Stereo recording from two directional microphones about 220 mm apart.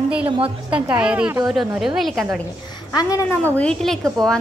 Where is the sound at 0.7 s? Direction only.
5° right (ahead or behind).